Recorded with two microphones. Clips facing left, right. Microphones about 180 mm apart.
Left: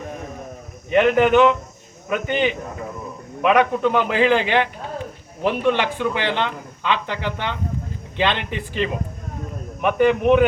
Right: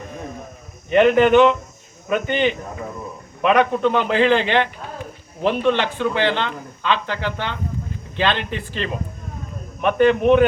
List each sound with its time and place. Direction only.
0.9 s a man's voice: 5° left (ahead or behind)